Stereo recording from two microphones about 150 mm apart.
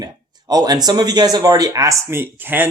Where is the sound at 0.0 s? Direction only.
25° right (ahead or behind).